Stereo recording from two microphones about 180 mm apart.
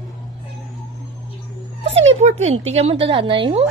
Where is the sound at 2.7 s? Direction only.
35° right (ahead or behind).